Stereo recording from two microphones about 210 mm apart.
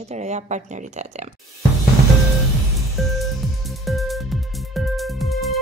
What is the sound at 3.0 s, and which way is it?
Music, centre (ahead or behind).